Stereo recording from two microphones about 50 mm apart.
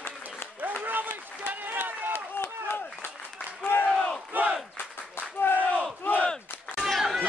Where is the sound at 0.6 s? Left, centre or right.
Right.